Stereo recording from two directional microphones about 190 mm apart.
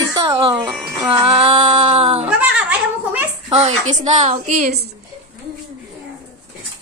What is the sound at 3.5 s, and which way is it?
Speech, 35° right (ahead or behind).